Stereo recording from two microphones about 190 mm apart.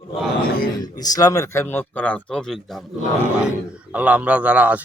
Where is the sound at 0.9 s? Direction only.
20° left (ahead or behind); by 2.8 s centre (ahead or behind).